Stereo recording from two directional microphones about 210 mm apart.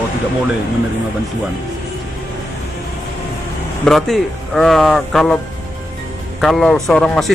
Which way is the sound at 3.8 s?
Centre (ahead or behind).